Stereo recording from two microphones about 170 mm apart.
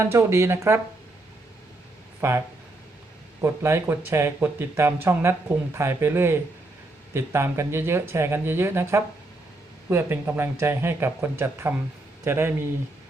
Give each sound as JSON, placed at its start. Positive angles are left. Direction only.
{"t": 0.0, "sound": "speech", "side_deg": -15}
{"t": 2.2, "sound": "speech", "side_deg": -15}
{"t": 3.4, "sound": "speech", "side_deg": -15}